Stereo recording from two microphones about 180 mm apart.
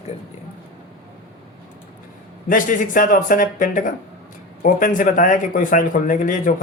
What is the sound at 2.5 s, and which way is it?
Speech, 50° left (ahead or behind).